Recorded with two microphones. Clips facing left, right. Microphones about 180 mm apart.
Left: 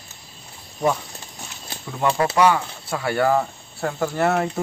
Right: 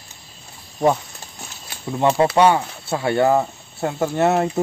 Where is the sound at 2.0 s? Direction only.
25° right (ahead or behind).